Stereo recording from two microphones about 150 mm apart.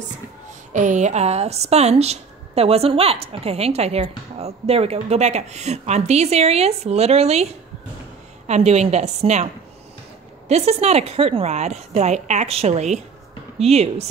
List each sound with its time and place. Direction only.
0.7 s a woman's voice: 55° right (ahead or behind)
8.5 s a woman's voice: 45° right (ahead or behind)
10.5 s a woman's voice: 45° right (ahead or behind)